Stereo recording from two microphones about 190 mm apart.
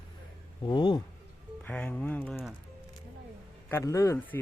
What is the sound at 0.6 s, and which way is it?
Speech, 25° left (ahead or behind).